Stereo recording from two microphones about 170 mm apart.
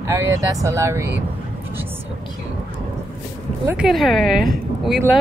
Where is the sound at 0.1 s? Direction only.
15° right (ahead or behind).